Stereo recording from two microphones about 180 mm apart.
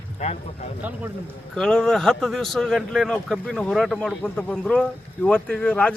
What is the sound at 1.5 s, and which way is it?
A man's voice, 5° left (ahead or behind).